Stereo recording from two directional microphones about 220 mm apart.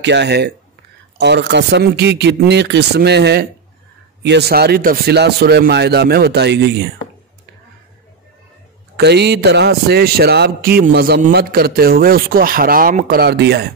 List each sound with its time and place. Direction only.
0.0 s speech: 50° right (ahead or behind)
8.9 s speech: 50° right (ahead or behind)